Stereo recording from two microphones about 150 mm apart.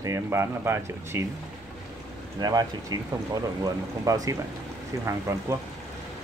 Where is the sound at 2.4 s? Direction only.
25° right (ahead or behind).